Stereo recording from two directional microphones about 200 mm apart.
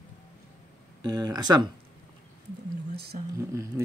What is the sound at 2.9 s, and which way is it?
Speech, 55° right (ahead or behind).